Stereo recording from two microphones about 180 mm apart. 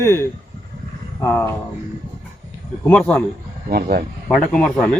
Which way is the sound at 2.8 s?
10° left (ahead or behind).